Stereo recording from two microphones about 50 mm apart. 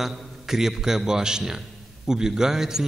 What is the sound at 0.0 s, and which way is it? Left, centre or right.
A man's voice, centre.